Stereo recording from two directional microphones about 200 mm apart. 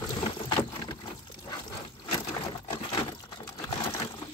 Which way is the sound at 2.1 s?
20° left (ahead or behind).